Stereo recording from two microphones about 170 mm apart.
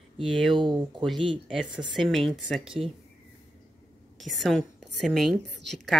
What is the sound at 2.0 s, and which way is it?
Speech, centre (ahead or behind).